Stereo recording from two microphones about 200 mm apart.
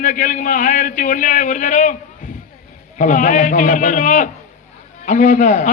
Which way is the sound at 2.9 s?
35° left (ahead or behind).